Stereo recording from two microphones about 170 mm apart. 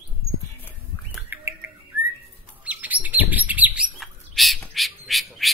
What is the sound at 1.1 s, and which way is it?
Bird, 10° right (ahead or behind).